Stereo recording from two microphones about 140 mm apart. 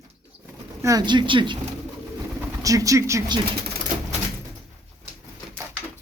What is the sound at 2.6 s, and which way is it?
Speech, 25° right (ahead or behind).